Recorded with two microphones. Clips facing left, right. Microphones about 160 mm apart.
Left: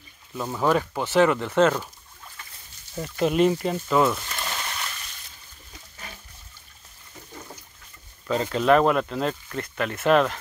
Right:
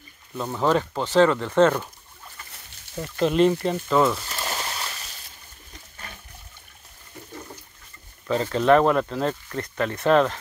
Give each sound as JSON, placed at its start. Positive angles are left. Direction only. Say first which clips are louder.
{"t": 0.3, "sound": "speech", "louder": "right 1 dB", "side_deg": 0}
{"t": 3.2, "sound": "speech", "louder": "right 1 dB", "side_deg": 10}
{"t": 4.6, "sound": "splash", "louder": "right 2 dB", "side_deg": -30}
{"t": 8.5, "sound": "speech", "louder": "right 1 dB", "side_deg": 5}
{"t": 9.6, "sound": "speech", "louder": "right 2 dB", "side_deg": -25}
{"t": 9.9, "sound": "speech", "louder": "right 1 dB", "side_deg": 10}